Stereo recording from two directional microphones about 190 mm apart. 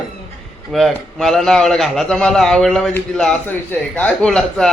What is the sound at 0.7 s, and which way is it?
A man's voice, centre (ahead or behind).